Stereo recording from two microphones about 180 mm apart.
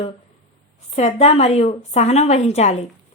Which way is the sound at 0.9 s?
40° left (ahead or behind).